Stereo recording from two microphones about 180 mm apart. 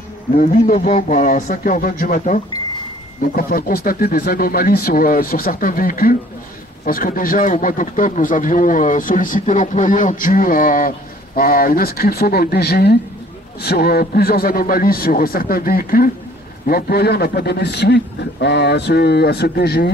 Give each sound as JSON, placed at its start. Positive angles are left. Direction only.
{"t": 0.4, "sound": "speech", "side_deg": 45}
{"t": 3.4, "sound": "a man's voice", "side_deg": 55}